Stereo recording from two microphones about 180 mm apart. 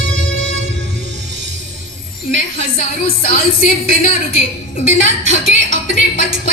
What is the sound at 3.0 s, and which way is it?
Speech, 55° left (ahead or behind).